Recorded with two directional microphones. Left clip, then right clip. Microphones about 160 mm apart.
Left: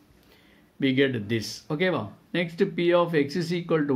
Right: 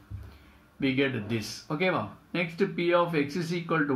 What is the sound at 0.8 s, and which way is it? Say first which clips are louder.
Speech: left 4 dB; 35° left (ahead or behind).